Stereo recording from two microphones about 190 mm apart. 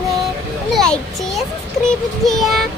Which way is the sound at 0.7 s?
5° left (ahead or behind).